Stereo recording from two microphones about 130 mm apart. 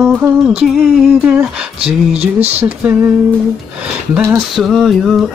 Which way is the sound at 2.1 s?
10° right (ahead or behind).